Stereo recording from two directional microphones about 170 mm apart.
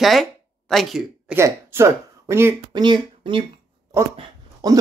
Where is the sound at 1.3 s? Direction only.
15° right (ahead or behind).